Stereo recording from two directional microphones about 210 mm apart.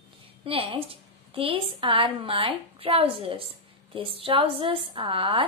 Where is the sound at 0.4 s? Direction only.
25° right (ahead or behind).